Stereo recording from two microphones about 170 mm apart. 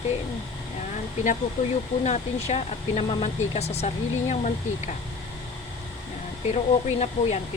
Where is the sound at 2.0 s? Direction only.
40° left (ahead or behind).